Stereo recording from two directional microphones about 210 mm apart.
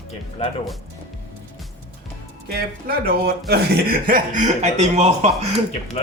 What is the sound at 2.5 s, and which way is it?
Speech, 45° right (ahead or behind).